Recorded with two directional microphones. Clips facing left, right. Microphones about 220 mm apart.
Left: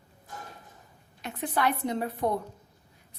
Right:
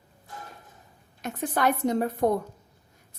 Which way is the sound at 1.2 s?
45° right (ahead or behind).